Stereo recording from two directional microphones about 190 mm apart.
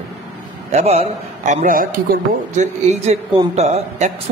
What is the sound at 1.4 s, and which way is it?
A man's voice, 40° right (ahead or behind).